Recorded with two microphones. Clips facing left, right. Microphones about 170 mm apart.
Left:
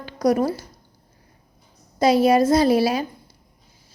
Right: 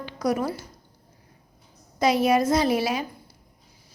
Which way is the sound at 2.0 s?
30° left (ahead or behind).